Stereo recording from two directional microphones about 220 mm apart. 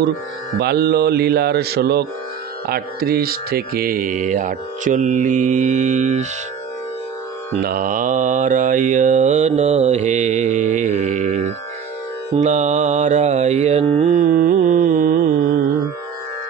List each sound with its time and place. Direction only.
0.6 s mantra: 45° right (ahead or behind)
7.5 s mantra: 40° right (ahead or behind)